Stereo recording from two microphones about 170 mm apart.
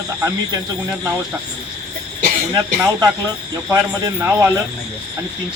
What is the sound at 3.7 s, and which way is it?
Speech, 15° right (ahead or behind).